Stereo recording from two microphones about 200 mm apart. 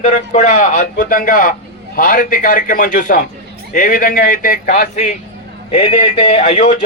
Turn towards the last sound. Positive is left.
turn(degrees=35)  # may be behind; listen again after turning